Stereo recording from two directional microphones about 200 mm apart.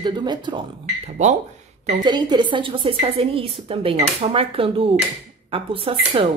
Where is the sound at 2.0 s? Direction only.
20° right (ahead or behind).